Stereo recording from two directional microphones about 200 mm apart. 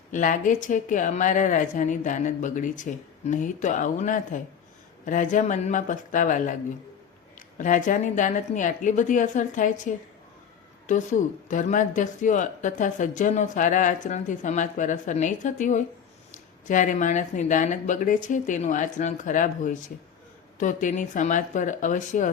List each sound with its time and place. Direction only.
0.1 s speech: 40° left (ahead or behind)
7.6 s speech: 40° left (ahead or behind)
10.8 s speech: 40° left (ahead or behind)